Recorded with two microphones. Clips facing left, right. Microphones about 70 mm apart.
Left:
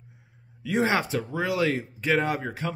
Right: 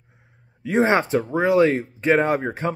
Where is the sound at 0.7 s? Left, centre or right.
Right.